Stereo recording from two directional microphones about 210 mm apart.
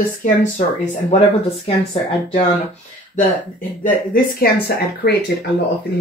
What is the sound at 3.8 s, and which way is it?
Speech, 45° left (ahead or behind).